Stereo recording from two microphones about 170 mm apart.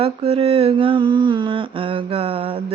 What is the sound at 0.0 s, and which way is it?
Mantra, 35° right (ahead or behind).